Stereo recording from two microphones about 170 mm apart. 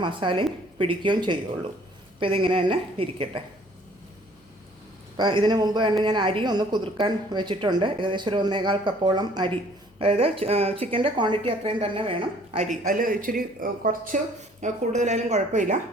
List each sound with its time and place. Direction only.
0.0 s a woman's voice: 30° right (ahead or behind)
5.1 s a woman's voice: 25° right (ahead or behind)
12.5 s a woman's voice: 50° right (ahead or behind)